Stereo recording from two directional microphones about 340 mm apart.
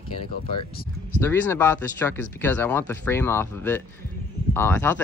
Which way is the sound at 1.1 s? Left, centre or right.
Centre.